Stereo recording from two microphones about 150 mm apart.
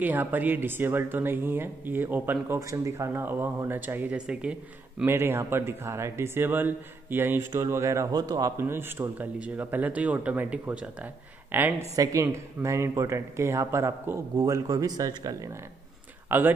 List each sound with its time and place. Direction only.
0.0 s speech: 10° right (ahead or behind)
16.3 s speech: 15° right (ahead or behind)